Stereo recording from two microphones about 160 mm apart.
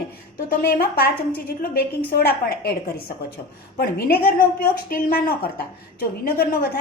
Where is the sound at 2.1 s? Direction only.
75° left (ahead or behind).